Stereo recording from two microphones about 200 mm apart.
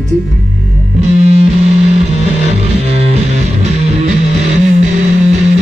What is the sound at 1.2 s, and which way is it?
Music, 30° right (ahead or behind).